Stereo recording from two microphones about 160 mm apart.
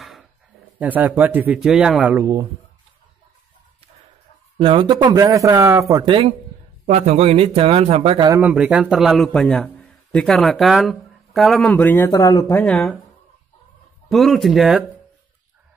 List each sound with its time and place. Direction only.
0.7 s speech: 10° right (ahead or behind)
4.6 s speech: 35° right (ahead or behind); by 6.0 s 20° right (ahead or behind)
6.0 s speech: 35° right (ahead or behind)
8.3 s a man's voice: 10° right (ahead or behind); by 12.6 s 20° left (ahead or behind)
12.6 s a man's voice: 5° left (ahead or behind)
14.0 s a man's voice: centre (ahead or behind)